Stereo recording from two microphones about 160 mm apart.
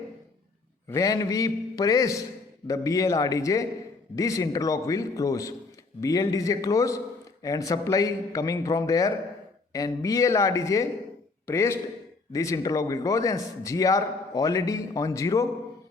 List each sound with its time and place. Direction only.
0.9 s a man's voice: 20° left (ahead or behind)